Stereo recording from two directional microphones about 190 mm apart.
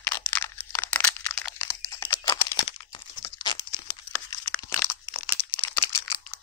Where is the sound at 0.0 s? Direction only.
10° left (ahead or behind).